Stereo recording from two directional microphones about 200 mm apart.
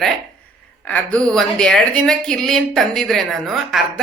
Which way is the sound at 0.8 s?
5° left (ahead or behind).